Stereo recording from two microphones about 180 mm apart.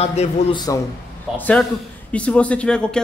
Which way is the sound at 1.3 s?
10° left (ahead or behind).